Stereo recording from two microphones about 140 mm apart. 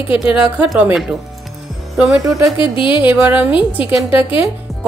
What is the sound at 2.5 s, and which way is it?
Speech, 35° left (ahead or behind).